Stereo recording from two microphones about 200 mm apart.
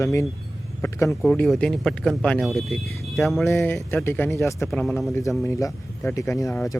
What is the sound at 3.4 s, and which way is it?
Speech, 10° left (ahead or behind).